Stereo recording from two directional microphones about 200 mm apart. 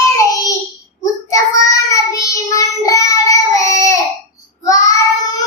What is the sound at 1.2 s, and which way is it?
Child singing, 15° left (ahead or behind).